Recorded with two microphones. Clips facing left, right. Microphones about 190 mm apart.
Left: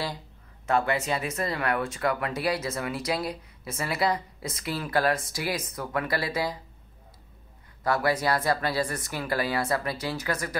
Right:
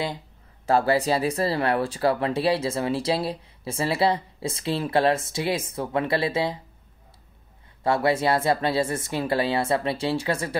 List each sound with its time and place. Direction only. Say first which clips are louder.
0.7 s speech: right 5 dB; 35° right (ahead or behind)
7.8 s speech: right 4 dB; 25° right (ahead or behind)